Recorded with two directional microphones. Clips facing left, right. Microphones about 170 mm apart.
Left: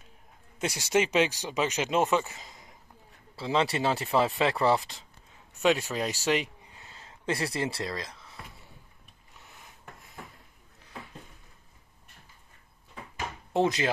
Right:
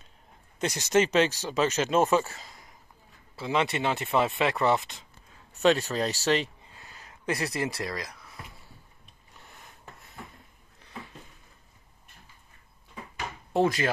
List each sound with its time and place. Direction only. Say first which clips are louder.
0.6 s speech: right 2 dB; 10° left (ahead or behind)
3.3 s speech: even; 30° left (ahead or behind)
5.5 s speech: right 2 dB; 10° left (ahead or behind)
9.4 s a sound: right 1 dB; 5° left (ahead or behind)
13.5 s speech: right 1 dB; 20° left (ahead or behind)